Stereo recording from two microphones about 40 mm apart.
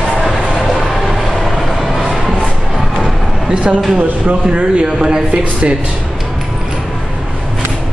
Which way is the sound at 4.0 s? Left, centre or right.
Right.